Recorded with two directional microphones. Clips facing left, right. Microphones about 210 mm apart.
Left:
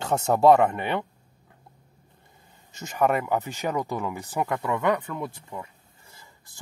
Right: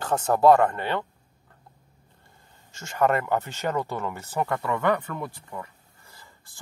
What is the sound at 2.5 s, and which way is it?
Speech, 20° left (ahead or behind).